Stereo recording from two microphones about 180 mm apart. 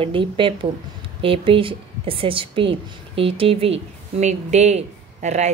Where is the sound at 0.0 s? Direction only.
30° right (ahead or behind).